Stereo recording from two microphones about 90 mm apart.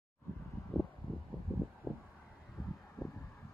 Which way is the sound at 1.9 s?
20° right (ahead or behind).